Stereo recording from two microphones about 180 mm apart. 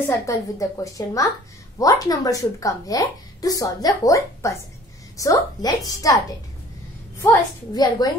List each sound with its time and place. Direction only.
0.0 s a woman's voice: 15° left (ahead or behind)
7.2 s a woman's voice: 20° left (ahead or behind)